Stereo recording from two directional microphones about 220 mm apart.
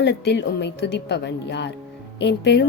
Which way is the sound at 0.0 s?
50° left (ahead or behind).